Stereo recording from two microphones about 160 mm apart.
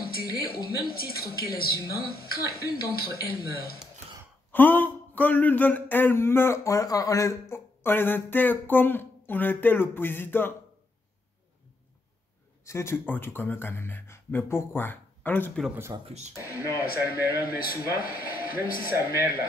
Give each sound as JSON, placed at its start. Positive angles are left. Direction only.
{"t": 0.6, "sound": "a woman's voice", "side_deg": 70}
{"t": 4.5, "sound": "speech", "side_deg": 10}
{"t": 12.6, "sound": "speech", "side_deg": 15}
{"t": 16.1, "sound": "speech", "side_deg": -45}
{"t": 16.7, "sound": "a woman's voice", "side_deg": 65}